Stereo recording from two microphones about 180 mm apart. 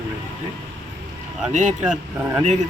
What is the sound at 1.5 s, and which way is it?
Speech, 45° right (ahead or behind).